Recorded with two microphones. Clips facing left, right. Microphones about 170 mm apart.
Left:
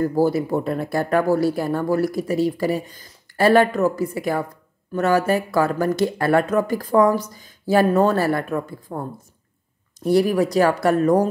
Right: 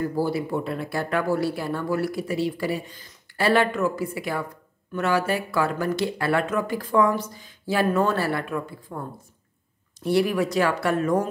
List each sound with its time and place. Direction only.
0.0 s speech: 45° left (ahead or behind)